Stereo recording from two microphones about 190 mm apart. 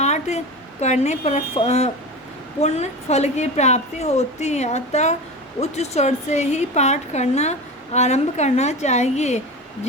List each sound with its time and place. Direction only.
0.0 s a woman's voice: 35° left (ahead or behind)